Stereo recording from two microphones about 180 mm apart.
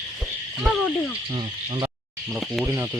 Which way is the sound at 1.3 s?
25° right (ahead or behind).